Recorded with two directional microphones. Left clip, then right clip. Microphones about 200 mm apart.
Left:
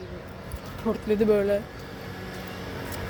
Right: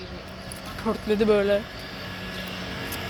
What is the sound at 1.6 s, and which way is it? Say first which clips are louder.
Vehicle: right 3 dB; 55° left (ahead or behind).